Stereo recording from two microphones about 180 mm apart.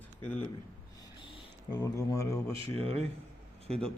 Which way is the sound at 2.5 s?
30° right (ahead or behind).